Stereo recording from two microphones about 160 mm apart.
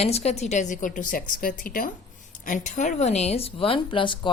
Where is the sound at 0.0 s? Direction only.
40° left (ahead or behind).